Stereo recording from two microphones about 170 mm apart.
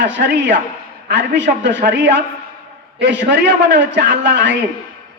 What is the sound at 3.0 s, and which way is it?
A man's voice, 90° right.